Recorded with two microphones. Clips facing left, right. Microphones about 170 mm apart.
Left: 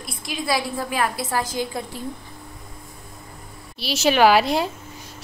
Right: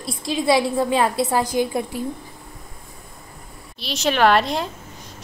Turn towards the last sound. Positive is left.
turn(degrees=5)  # may be behind; listen again after turning